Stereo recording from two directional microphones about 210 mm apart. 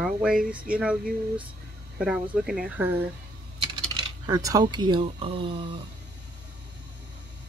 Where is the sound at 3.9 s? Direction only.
20° right (ahead or behind).